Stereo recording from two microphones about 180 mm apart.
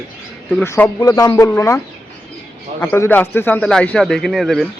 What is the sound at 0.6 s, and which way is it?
A man's voice, 15° left (ahead or behind).